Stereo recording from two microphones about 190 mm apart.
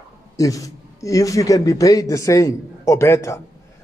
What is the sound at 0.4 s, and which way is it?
Speech, 15° left (ahead or behind).